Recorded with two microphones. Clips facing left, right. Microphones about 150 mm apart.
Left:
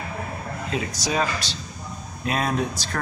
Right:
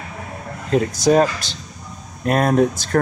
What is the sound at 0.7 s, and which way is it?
Speech, 50° right (ahead or behind).